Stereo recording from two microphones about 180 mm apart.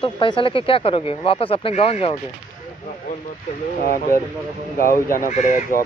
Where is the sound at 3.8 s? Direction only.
50° left (ahead or behind).